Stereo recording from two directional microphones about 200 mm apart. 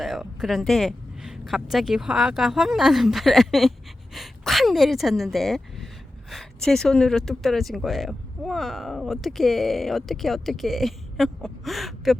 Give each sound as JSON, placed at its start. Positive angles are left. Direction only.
{"t": 0.0, "sound": "speech", "side_deg": 0}